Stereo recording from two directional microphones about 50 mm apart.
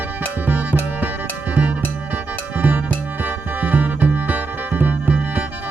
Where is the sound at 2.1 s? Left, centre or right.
Right.